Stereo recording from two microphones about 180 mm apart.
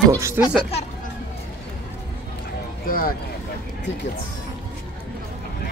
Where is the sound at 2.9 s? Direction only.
55° left (ahead or behind).